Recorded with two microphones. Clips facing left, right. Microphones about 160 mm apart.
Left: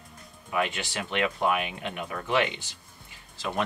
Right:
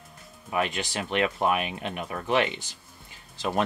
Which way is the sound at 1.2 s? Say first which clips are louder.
Even; 25° right (ahead or behind).